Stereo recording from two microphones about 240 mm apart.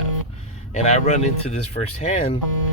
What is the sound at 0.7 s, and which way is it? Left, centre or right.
Speech, left.